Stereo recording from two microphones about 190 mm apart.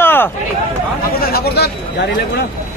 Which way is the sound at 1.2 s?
55° left (ahead or behind).